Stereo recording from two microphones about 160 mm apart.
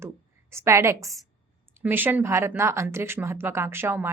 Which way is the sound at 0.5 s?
15° right (ahead or behind).